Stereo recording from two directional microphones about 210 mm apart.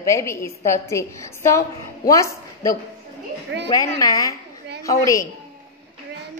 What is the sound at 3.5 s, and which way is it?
Speech, 60° right (ahead or behind).